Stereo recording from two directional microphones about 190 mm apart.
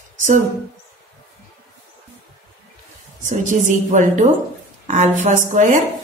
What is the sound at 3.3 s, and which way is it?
A woman's voice, 40° right (ahead or behind).